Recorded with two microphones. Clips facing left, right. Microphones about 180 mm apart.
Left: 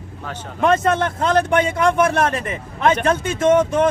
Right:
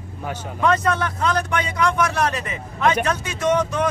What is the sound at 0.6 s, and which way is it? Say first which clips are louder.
Speech: left 3 dB; 25° left (ahead or behind).